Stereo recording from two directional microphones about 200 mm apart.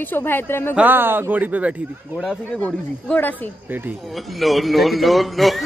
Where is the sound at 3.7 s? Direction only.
10° right (ahead or behind).